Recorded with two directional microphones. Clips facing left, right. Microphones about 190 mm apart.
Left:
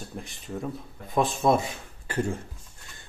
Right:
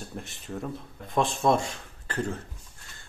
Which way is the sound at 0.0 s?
Centre (ahead or behind).